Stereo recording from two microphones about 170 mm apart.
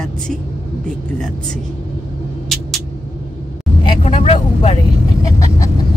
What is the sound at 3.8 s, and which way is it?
Vehicle, 35° left (ahead or behind).